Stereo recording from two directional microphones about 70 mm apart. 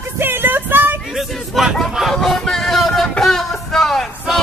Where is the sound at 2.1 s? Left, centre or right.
Centre.